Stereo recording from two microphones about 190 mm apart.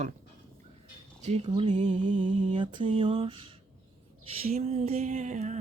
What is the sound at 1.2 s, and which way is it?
Speech, 35° right (ahead or behind).